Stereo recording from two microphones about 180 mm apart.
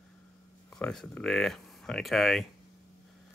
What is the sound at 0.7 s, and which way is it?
Speech, 5° left (ahead or behind).